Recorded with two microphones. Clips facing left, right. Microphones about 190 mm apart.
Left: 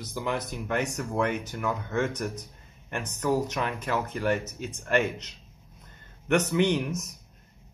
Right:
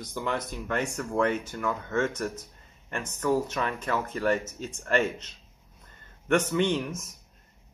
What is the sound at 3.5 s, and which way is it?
Speech, 15° left (ahead or behind).